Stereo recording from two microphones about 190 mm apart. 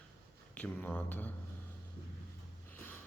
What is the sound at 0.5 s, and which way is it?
Speech, 5° left (ahead or behind).